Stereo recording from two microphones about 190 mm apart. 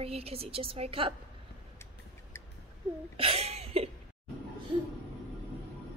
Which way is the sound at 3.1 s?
30° right (ahead or behind).